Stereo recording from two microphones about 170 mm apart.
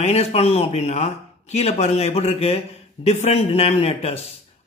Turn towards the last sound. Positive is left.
turn(degrees=35)  # may be behind; listen again after turning